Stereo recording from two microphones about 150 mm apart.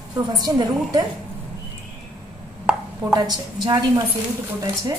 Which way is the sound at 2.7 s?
5° right (ahead or behind).